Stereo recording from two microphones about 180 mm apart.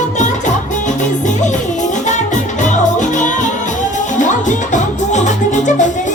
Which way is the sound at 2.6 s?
45° left (ahead or behind).